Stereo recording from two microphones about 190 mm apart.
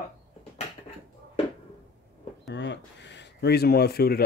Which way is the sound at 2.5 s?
70° left (ahead or behind).